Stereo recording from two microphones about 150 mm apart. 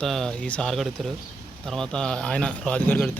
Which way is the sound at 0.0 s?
5° left (ahead or behind).